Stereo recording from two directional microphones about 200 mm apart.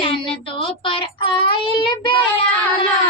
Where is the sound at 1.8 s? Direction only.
25° left (ahead or behind).